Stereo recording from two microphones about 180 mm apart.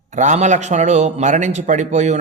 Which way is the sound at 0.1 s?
40° right (ahead or behind).